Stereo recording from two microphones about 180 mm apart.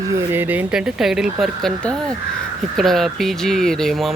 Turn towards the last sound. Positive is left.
turn(degrees=0)  # may be behind; listen again after turning